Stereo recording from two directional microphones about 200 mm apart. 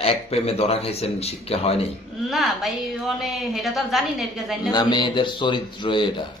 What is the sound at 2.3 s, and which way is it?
A woman's voice, centre (ahead or behind).